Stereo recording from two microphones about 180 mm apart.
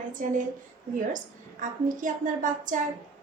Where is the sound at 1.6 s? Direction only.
45° right (ahead or behind).